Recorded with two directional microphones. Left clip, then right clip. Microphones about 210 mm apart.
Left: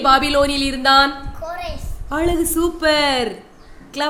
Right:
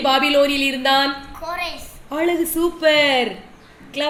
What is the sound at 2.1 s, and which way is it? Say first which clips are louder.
A woman's voice: left 1 dB; 20° left (ahead or behind).